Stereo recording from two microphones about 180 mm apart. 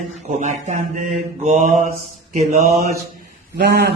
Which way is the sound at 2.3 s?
35° right (ahead or behind).